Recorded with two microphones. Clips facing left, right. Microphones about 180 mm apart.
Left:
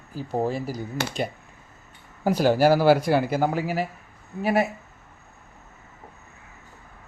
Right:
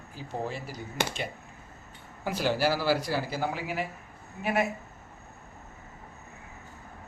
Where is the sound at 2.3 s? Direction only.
45° left (ahead or behind).